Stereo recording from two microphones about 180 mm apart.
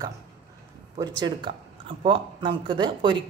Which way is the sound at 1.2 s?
25° right (ahead or behind).